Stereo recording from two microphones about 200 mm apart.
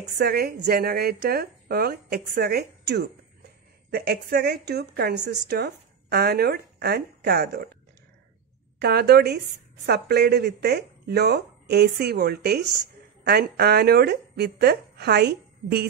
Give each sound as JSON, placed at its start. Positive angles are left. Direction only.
{"t": 0.2, "sound": "a woman's voice", "side_deg": -50}
{"t": 8.7, "sound": "a woman's voice", "side_deg": -55}